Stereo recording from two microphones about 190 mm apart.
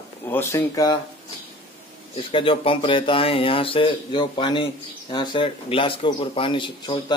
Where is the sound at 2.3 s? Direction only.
30° left (ahead or behind).